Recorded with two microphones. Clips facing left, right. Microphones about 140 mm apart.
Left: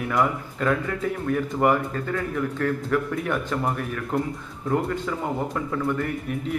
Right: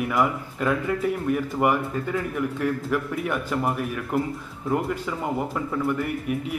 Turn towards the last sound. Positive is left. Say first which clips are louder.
# even
turn(degrees=-5)  # may be behind; listen again after turning